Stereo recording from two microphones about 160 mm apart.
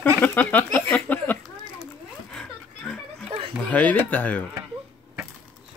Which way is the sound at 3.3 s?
35° right (ahead or behind).